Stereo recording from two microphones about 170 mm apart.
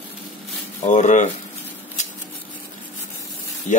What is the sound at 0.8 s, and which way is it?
Speech, 45° left (ahead or behind).